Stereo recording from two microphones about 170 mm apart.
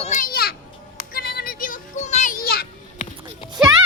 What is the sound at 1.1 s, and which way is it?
Music, 65° left (ahead or behind).